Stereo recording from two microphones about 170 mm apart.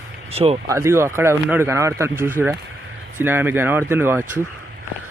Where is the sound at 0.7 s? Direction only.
15° right (ahead or behind).